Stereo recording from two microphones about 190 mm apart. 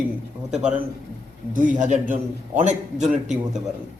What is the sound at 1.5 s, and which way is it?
Speech, 40° right (ahead or behind).